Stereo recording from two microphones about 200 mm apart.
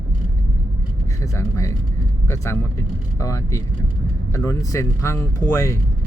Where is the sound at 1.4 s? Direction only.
15° left (ahead or behind).